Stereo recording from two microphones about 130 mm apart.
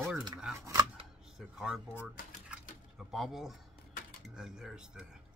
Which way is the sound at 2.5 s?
Centre (ahead or behind).